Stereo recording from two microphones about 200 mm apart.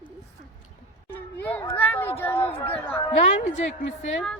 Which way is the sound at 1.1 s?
10° left (ahead or behind).